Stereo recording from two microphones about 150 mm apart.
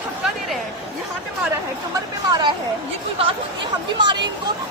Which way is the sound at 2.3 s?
30° right (ahead or behind).